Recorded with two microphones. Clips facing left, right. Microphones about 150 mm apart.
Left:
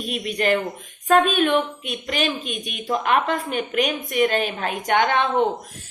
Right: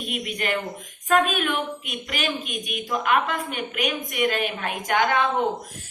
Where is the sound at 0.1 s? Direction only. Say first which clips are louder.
Left 6 dB; 35° left (ahead or behind).